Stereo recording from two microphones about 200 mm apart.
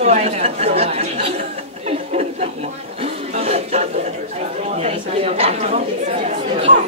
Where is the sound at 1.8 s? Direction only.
35° right (ahead or behind).